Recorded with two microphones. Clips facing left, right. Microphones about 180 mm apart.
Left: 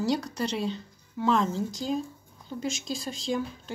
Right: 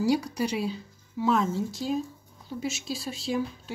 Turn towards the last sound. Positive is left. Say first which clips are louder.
# right 1 dB
turn(degrees=-5)  # may be behind; listen again after turning